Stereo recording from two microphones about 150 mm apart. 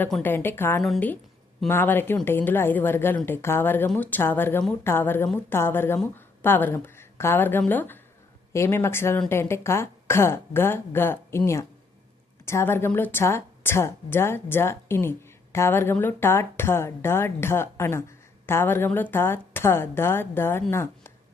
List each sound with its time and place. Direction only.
0.2 s a woman's voice: 15° left (ahead or behind)